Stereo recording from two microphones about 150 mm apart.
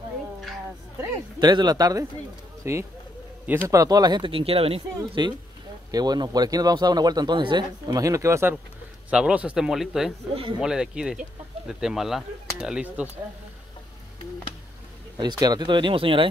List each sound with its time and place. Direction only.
1.4 s speech: 30° right (ahead or behind); by 13.0 s 5° right (ahead or behind)
15.1 s speech: 30° right (ahead or behind)